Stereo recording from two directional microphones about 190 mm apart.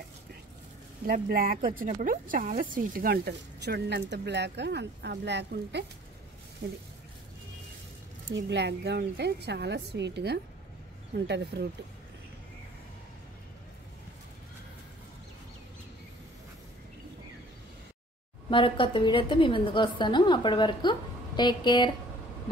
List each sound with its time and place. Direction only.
1.0 s a woman's voice: 50° right (ahead or behind)
8.3 s a woman's voice: 65° right (ahead or behind)
18.5 s a woman's voice: 25° left (ahead or behind)